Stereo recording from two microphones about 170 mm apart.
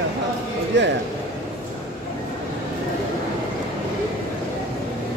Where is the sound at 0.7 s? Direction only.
90° right.